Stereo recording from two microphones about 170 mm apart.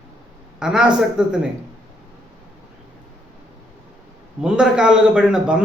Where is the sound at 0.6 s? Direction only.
5° right (ahead or behind).